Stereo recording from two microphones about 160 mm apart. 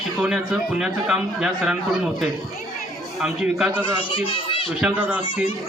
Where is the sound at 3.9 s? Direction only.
35° left (ahead or behind).